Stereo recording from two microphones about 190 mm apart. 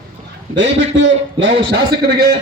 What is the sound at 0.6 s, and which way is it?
Speech, 70° right (ahead or behind).